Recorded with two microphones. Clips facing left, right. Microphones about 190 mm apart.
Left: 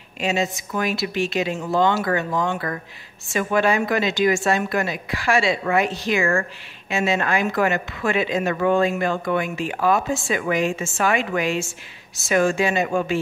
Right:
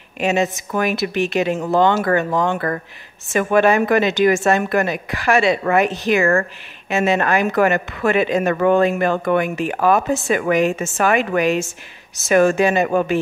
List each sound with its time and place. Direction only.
0.2 s speech: 60° right (ahead or behind)